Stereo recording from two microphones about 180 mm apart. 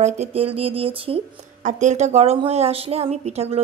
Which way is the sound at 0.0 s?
35° right (ahead or behind).